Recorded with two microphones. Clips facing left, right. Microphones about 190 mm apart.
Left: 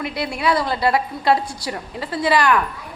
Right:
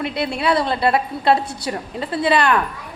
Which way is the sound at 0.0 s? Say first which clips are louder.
Right 1 dB; 25° right (ahead or behind).